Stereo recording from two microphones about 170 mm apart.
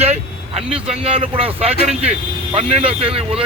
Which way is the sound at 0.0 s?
40° right (ahead or behind).